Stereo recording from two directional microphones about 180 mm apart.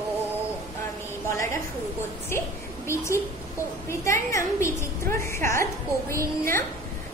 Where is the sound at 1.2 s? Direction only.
15° left (ahead or behind).